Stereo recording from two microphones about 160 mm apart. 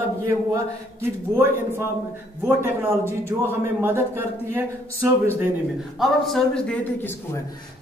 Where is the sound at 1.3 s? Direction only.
15° right (ahead or behind).